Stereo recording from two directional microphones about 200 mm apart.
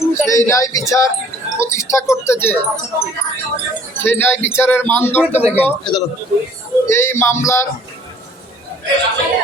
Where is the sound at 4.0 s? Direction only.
10° left (ahead or behind).